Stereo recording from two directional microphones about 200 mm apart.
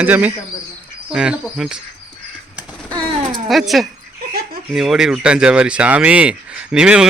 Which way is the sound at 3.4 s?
Centre (ahead or behind).